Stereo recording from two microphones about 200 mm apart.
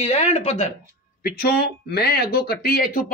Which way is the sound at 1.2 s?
50° left (ahead or behind).